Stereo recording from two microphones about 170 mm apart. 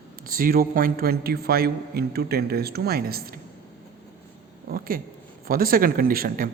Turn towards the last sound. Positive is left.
turn(degrees=-60)  # may be behind; listen again after turning